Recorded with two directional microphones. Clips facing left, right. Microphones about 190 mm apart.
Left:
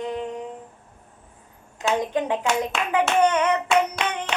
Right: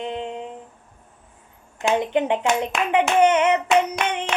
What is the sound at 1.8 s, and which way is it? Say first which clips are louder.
Speech: right 3 dB; 20° right (ahead or behind).